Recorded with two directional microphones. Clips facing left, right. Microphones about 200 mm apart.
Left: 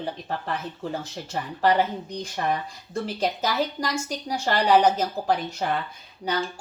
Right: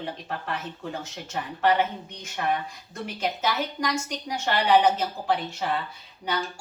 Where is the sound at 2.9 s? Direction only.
35° left (ahead or behind).